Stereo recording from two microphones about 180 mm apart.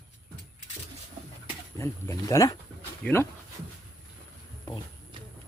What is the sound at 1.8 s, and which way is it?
Speech, 15° left (ahead or behind).